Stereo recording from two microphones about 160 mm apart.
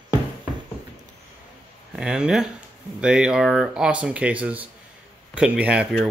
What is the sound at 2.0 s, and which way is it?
Speech, 5° right (ahead or behind).